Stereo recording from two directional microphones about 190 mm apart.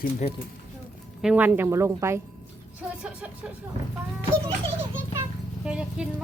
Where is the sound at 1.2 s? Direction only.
5° right (ahead or behind).